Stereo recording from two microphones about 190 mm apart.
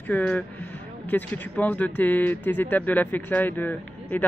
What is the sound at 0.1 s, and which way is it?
Speech, 5° left (ahead or behind).